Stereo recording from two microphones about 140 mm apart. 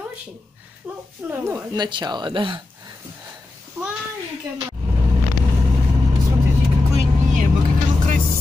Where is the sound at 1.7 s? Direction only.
30° right (ahead or behind).